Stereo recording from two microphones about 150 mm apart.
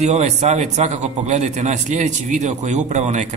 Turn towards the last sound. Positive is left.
turn(degrees=-50)  # may be behind; listen again after turning